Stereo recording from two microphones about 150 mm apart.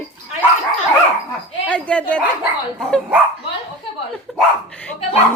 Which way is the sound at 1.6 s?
10° left (ahead or behind).